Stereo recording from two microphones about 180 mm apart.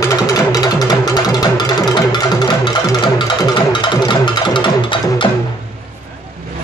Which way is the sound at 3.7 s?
25° left (ahead or behind).